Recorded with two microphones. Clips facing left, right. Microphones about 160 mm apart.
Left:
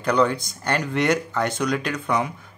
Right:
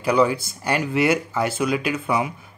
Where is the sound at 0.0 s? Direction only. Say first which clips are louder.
Right 1 dB; 5° right (ahead or behind).